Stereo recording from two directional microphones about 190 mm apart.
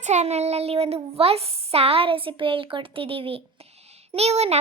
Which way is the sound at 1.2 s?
30° right (ahead or behind).